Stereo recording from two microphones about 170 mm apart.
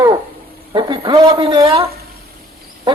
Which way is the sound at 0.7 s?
25° right (ahead or behind).